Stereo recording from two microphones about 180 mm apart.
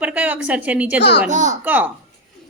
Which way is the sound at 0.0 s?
10° right (ahead or behind).